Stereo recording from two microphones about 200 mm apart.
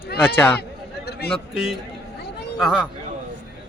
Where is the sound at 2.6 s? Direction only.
5° right (ahead or behind).